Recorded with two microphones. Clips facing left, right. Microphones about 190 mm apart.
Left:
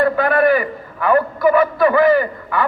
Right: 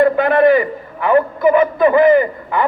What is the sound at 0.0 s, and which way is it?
A man's voice, 20° right (ahead or behind).